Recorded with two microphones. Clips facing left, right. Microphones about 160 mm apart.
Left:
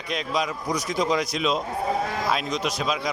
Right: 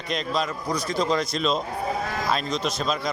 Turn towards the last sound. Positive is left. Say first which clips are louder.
# even
turn(degrees=10)  # may be behind; listen again after turning